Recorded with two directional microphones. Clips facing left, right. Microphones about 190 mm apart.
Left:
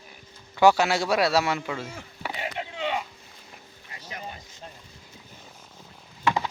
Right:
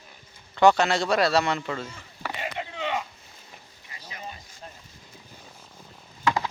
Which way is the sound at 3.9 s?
55° left (ahead or behind).